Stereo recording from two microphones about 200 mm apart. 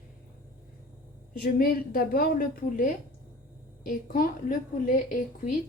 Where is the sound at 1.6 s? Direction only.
45° left (ahead or behind).